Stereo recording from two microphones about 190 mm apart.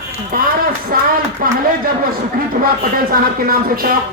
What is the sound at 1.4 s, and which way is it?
Speech, 50° right (ahead or behind).